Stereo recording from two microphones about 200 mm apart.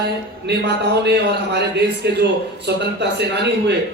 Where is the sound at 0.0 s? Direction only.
55° right (ahead or behind).